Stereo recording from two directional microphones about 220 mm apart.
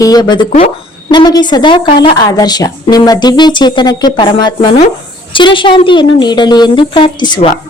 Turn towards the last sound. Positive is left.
turn(degrees=20)  # may be behind; listen again after turning